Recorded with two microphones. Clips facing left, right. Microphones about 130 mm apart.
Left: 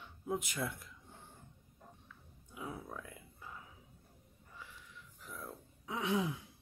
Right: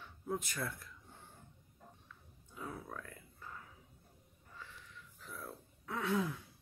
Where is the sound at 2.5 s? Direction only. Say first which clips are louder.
Left 1 dB; 10° left (ahead or behind).